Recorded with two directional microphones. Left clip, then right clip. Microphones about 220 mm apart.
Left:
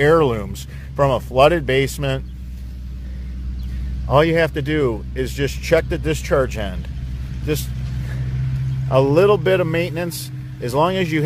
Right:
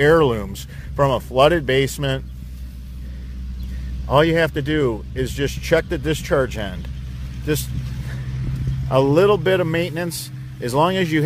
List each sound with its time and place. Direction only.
0.0 s speech: 10° right (ahead or behind)
4.1 s speech: 10° right (ahead or behind)
8.8 s speech: 15° right (ahead or behind)